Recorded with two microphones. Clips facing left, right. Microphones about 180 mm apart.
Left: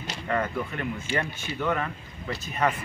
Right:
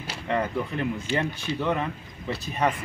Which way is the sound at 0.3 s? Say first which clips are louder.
Right 2 dB; 20° right (ahead or behind).